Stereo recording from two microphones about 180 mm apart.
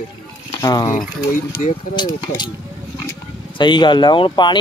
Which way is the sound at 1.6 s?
45° left (ahead or behind).